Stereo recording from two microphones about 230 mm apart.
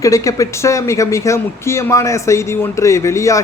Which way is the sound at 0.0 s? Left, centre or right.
Centre.